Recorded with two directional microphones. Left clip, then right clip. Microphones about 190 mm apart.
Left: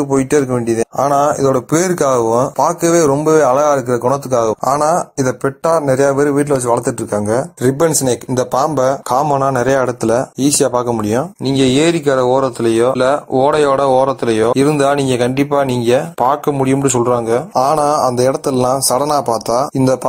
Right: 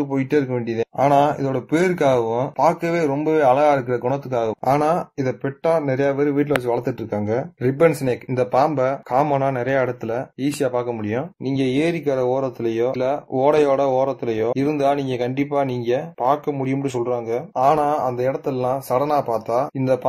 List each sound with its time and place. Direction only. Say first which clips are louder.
0.1 s speech: left 8 dB; 20° left (ahead or behind)
17.6 s a man's voice: left 4 dB; 45° left (ahead or behind)